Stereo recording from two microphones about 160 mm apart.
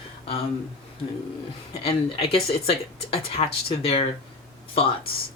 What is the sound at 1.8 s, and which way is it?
Speech, 40° left (ahead or behind).